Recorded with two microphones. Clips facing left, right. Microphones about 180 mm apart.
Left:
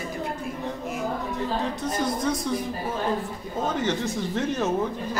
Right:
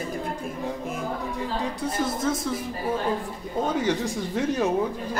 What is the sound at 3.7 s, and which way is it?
Speech, 10° right (ahead or behind).